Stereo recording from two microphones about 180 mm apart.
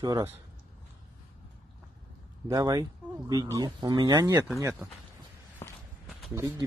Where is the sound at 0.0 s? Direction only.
15° right (ahead or behind).